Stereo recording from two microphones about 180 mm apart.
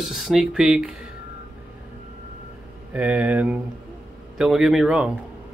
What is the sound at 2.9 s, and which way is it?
Speech, 5° right (ahead or behind).